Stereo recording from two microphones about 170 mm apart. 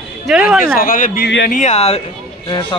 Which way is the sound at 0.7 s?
55° left (ahead or behind).